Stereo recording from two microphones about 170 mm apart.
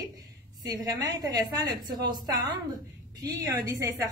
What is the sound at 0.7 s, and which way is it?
A woman's voice, 20° right (ahead or behind).